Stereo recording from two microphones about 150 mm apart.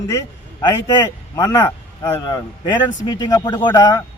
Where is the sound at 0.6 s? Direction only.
25° left (ahead or behind).